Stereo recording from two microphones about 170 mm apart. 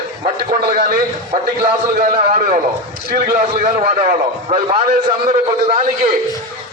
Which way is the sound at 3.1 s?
40° right (ahead or behind).